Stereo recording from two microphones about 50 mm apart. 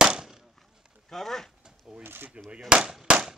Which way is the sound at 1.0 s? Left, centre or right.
Centre.